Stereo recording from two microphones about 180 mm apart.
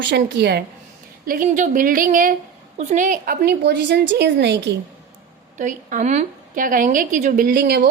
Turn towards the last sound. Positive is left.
turn(degrees=-65)  # may be behind; listen again after turning